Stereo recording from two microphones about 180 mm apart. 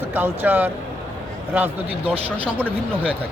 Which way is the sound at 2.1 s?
30° right (ahead or behind).